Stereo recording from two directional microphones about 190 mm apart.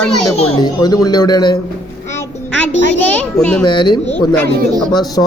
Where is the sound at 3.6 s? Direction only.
25° left (ahead or behind).